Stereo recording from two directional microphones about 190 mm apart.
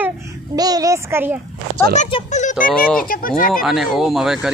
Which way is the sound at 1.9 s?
40° left (ahead or behind).